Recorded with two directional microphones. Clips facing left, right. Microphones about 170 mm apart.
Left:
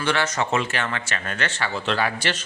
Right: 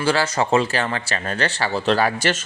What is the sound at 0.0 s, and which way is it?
Speech, 30° right (ahead or behind).